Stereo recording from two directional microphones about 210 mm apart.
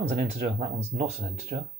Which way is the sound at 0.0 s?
30° right (ahead or behind).